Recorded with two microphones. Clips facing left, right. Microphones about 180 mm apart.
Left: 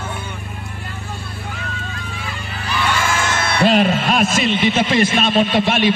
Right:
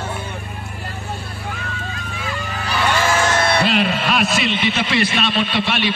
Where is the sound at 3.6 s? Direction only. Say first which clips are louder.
Left 4 dB; 45° left (ahead or behind).